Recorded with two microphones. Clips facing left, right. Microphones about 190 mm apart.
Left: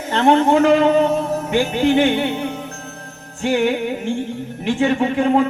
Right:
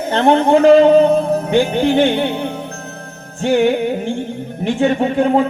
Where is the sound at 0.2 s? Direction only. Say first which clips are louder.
Right 2 dB; 35° right (ahead or behind).